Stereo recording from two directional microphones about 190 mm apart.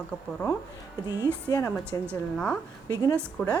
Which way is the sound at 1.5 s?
20° left (ahead or behind).